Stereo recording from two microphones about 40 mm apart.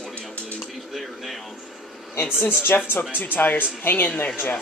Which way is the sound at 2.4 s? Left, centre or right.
Left.